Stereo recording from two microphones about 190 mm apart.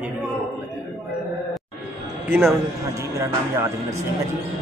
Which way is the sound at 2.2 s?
10° right (ahead or behind).